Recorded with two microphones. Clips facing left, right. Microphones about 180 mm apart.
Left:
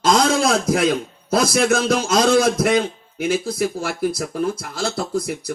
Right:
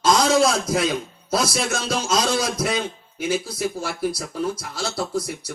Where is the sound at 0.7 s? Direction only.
55° left (ahead or behind).